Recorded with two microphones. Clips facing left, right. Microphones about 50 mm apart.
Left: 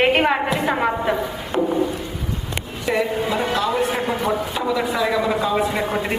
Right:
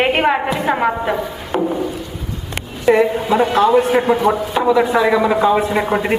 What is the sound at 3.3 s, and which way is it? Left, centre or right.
A man's voice, right.